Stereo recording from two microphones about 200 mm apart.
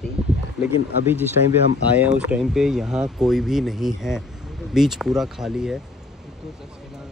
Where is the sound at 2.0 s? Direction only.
5° right (ahead or behind).